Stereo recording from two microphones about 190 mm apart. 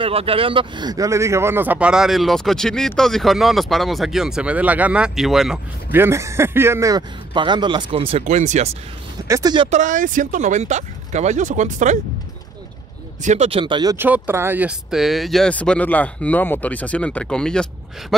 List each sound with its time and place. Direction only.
0.0 s speech: 30° right (ahead or behind)
9.3 s speech: 20° right (ahead or behind)
9.7 s speech: 40° right (ahead or behind)
13.2 s speech: 35° right (ahead or behind)
13.9 s speech: 10° right (ahead or behind)